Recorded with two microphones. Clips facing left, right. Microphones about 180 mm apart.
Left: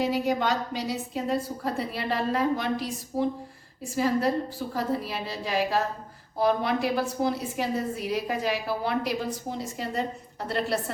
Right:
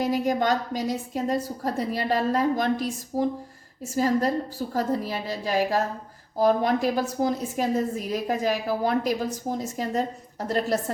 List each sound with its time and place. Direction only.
0.0 s a woman's voice: 45° right (ahead or behind)
3.9 s a woman's voice: 40° right (ahead or behind)